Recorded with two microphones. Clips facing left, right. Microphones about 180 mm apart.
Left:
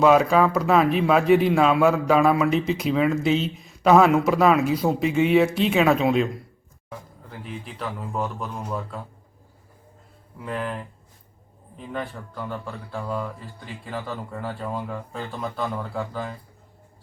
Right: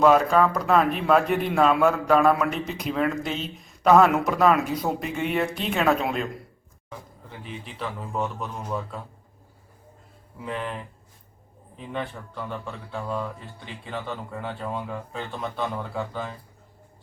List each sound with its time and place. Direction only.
0.0 s a man's voice: 5° left (ahead or behind)
7.3 s a man's voice: centre (ahead or behind)
10.4 s a man's voice: centre (ahead or behind)
11.9 s a man's voice: centre (ahead or behind)